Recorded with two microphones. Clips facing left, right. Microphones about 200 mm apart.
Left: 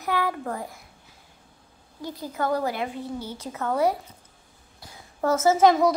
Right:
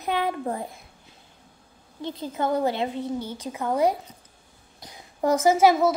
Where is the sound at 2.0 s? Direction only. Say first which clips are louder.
Right 1 dB; 25° right (ahead or behind).